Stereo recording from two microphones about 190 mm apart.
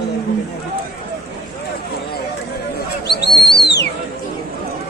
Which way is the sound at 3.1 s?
60° left (ahead or behind).